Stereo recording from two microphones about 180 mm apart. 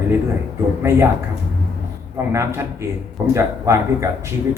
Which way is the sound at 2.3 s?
15° right (ahead or behind).